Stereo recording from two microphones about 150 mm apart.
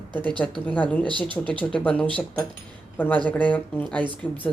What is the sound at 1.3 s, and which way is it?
Speech, 35° right (ahead or behind).